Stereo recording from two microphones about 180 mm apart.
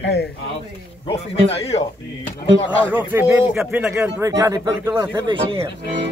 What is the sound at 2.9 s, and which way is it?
Speech, 10° right (ahead or behind).